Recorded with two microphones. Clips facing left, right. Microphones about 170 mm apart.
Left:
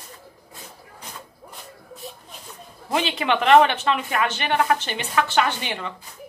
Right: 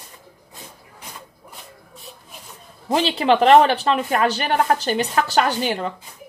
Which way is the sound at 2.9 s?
35° right (ahead or behind).